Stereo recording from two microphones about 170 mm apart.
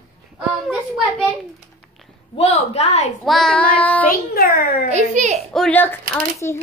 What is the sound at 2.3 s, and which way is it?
Speech, 40° left (ahead or behind).